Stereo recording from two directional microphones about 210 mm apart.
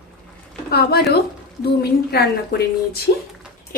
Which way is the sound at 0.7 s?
50° left (ahead or behind).